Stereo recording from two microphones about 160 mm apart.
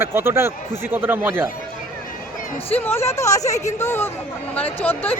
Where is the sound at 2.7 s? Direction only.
15° left (ahead or behind).